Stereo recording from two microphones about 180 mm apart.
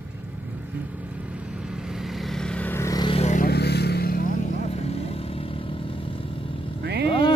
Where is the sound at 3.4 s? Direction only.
65° left (ahead or behind).